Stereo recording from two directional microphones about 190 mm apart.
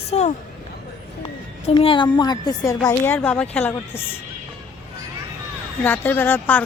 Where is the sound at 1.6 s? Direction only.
30° left (ahead or behind).